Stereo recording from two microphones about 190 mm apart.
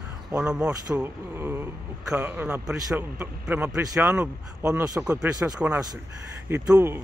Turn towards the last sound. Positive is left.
turn(degrees=-10)  # may be behind; listen again after turning